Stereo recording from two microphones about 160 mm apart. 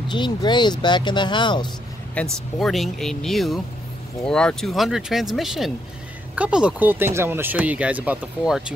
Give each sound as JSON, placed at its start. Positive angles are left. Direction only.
{"t": 0.1, "sound": "speech", "side_deg": 30}
{"t": 2.2, "sound": "speech", "side_deg": 10}